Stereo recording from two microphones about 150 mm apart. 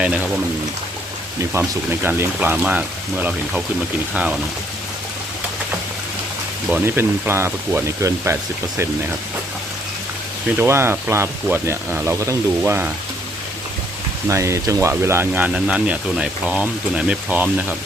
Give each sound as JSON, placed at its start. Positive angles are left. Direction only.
{"t": 1.5, "sound": "speech", "side_deg": -15}
{"t": 6.8, "sound": "speech", "side_deg": -15}
{"t": 10.6, "sound": "speech", "side_deg": -15}
{"t": 14.3, "sound": "speech", "side_deg": -20}